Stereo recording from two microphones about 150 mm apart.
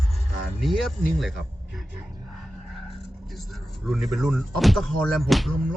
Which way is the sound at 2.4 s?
Centre (ahead or behind).